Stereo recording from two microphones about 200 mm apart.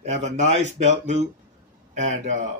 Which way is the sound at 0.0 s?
35° right (ahead or behind).